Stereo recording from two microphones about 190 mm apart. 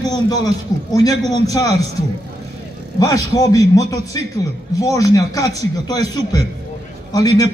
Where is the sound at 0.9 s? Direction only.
20° left (ahead or behind).